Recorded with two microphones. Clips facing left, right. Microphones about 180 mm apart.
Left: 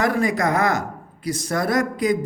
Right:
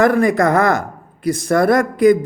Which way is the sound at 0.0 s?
55° right (ahead or behind).